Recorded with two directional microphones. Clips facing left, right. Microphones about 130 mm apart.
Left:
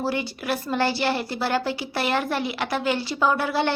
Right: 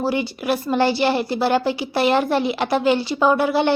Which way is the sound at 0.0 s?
20° right (ahead or behind).